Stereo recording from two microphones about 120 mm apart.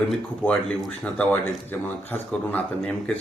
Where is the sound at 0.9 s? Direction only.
10° left (ahead or behind).